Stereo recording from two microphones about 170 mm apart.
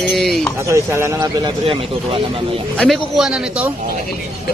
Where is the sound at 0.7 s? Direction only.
15° right (ahead or behind); by 2.2 s 35° right (ahead or behind).